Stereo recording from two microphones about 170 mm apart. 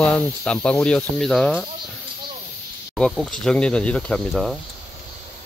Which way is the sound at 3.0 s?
Centre (ahead or behind).